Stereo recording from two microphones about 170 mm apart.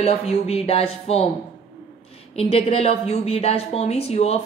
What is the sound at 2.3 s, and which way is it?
A woman's voice, 35° left (ahead or behind).